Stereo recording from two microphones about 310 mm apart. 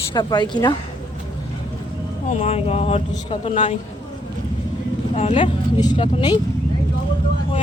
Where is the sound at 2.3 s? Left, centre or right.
Left.